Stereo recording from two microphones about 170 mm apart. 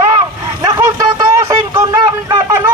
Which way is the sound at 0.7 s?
20° right (ahead or behind).